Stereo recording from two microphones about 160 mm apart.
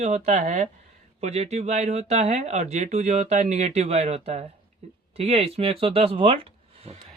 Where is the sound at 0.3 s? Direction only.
45° right (ahead or behind).